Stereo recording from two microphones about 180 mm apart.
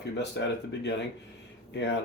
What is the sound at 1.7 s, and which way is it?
Speech, 75° left (ahead or behind).